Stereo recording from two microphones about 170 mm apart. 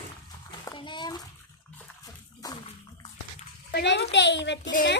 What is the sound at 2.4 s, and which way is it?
Bathtub, 20° left (ahead or behind).